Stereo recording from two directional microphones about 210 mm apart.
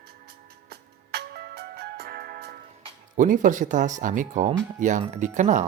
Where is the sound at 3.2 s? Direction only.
40° right (ahead or behind).